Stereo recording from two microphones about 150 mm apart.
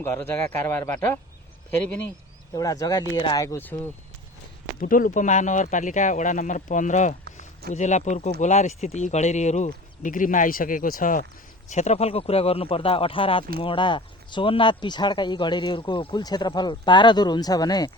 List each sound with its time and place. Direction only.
0.0 s speech: 10° left (ahead or behind)
2.6 s speech: 25° left (ahead or behind)
4.8 s speech: 65° left (ahead or behind)
11.7 s speech: 50° left (ahead or behind); by 17.9 s 25° left (ahead or behind)